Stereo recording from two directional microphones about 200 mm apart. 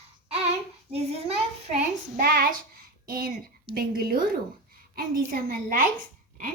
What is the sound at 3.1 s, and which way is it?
A woman's voice, 45° right (ahead or behind).